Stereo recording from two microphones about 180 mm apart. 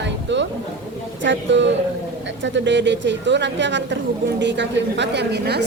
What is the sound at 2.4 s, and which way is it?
A woman's voice, 80° right.